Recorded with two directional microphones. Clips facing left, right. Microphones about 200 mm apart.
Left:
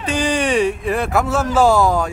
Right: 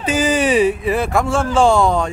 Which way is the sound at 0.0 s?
5° right (ahead or behind).